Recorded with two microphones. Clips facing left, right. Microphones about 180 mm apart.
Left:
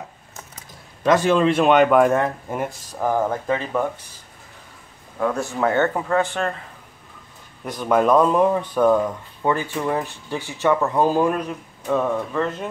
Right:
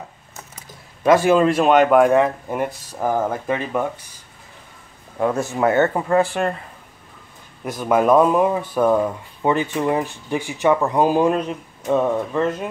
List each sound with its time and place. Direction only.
1.0 s speech: 10° right (ahead or behind)
5.2 s speech: 20° right (ahead or behind)
7.6 s speech: 5° right (ahead or behind)
9.5 s speech: 20° right (ahead or behind)